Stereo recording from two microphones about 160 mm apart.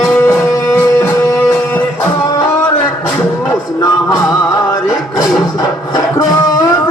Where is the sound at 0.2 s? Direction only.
20° left (ahead or behind).